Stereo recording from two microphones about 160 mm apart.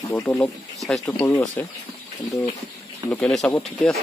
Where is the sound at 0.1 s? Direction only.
15° left (ahead or behind).